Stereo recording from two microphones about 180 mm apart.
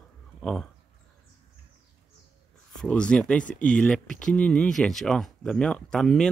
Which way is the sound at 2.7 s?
5° left (ahead or behind).